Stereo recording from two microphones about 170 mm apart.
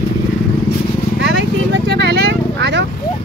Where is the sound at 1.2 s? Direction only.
90° right.